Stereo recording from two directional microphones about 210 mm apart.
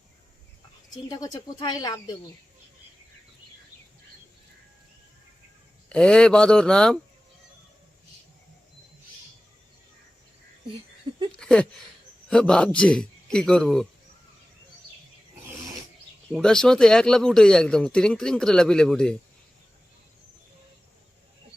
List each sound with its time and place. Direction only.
1.0 s speech: 15° left (ahead or behind)
5.9 s speech: 5° left (ahead or behind)
11.3 s a sound: 5° left (ahead or behind)
12.3 s speech: 5° left (ahead or behind)
16.3 s speech: 5° left (ahead or behind)